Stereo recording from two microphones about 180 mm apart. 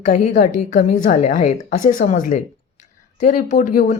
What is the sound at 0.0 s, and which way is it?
Speech, 45° left (ahead or behind).